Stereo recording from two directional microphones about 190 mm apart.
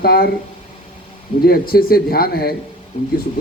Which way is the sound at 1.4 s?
50° left (ahead or behind).